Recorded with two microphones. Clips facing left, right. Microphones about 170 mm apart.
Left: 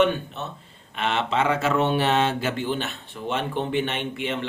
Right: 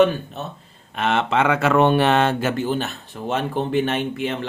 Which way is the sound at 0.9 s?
50° right (ahead or behind).